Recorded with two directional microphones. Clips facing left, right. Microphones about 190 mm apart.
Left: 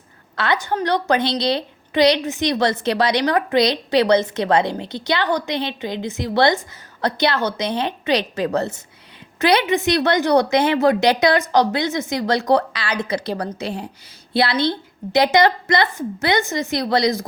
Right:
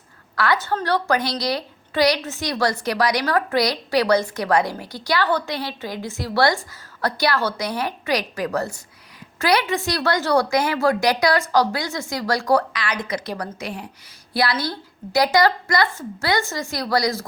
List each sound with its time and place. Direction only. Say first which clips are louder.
0.3 s a woman's voice: left 1 dB; 20° left (ahead or behind)